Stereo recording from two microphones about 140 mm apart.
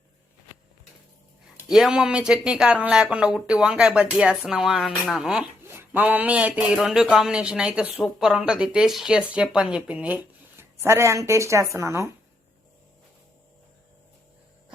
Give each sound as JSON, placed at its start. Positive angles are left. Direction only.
{"t": 1.6, "sound": "speech", "side_deg": -5}
{"t": 5.6, "sound": "speech", "side_deg": -15}
{"t": 10.6, "sound": "speech", "side_deg": -20}